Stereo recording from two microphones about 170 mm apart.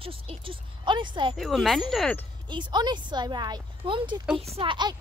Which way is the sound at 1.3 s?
Centre (ahead or behind).